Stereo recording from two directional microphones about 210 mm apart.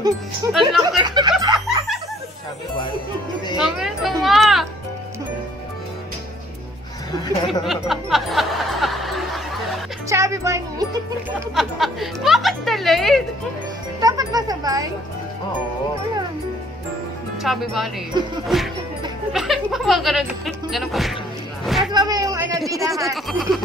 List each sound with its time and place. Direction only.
0.5 s a woman's voice: centre (ahead or behind)
1.0 s speech: 20° right (ahead or behind)
1.4 s a sound: 20° right (ahead or behind)
3.5 s music: centre (ahead or behind)
7.6 s music: centre (ahead or behind)
10.0 s music: 15° right (ahead or behind)
11.5 s a woman's voice: centre (ahead or behind)
14.0 s a child's voice: 20° right (ahead or behind)
17.4 s a woman's voice: centre (ahead or behind)
21.6 s a sound: centre (ahead or behind)
21.9 s a sound: 20° right (ahead or behind)
22.7 s a child's voice: 15° right (ahead or behind)
23.1 s a woman's voice: centre (ahead or behind)